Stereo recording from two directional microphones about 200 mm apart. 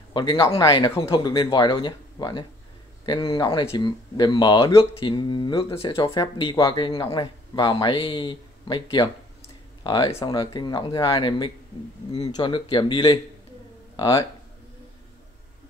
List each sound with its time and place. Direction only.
0.1 s speech: 25° left (ahead or behind)